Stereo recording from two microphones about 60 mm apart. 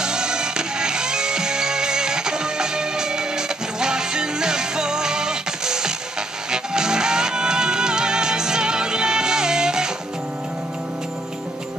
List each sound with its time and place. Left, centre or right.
0.0 s music: centre